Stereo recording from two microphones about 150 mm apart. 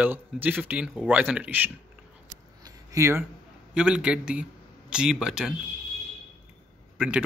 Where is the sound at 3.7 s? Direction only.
5° right (ahead or behind).